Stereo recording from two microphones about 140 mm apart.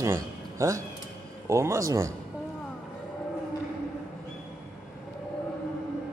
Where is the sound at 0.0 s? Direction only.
20° right (ahead or behind).